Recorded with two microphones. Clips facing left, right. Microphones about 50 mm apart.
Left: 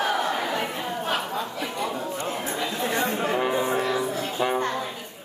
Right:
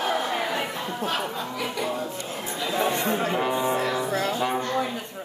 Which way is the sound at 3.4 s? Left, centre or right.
Centre.